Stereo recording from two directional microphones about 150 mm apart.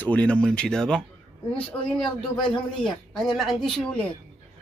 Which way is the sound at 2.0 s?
30° left (ahead or behind).